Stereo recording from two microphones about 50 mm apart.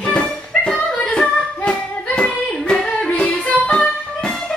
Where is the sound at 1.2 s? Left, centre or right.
Centre.